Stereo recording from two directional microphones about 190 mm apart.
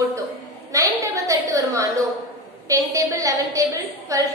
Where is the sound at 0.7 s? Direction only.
15° right (ahead or behind).